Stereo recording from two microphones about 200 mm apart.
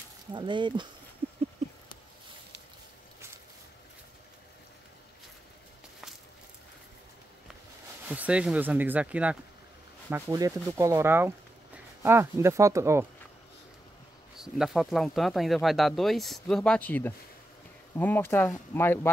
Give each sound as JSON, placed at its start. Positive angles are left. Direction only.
{"t": 0.3, "sound": "speech", "side_deg": -25}
{"t": 8.1, "sound": "speech", "side_deg": -5}
{"t": 10.0, "sound": "sanding", "side_deg": -15}
{"t": 14.3, "sound": "speech", "side_deg": 0}